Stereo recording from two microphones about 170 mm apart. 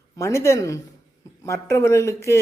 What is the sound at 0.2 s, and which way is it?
Speech, 15° left (ahead or behind).